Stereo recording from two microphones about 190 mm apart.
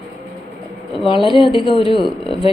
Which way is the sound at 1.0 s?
25° left (ahead or behind).